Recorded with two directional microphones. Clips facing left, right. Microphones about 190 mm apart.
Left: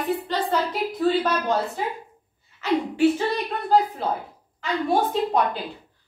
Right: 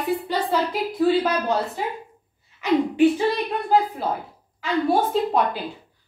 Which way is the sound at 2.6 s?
15° right (ahead or behind).